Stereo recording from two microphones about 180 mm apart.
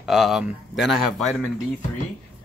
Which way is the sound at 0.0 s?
Centre (ahead or behind).